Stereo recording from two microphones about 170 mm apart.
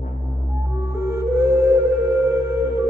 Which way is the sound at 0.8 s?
15° right (ahead or behind).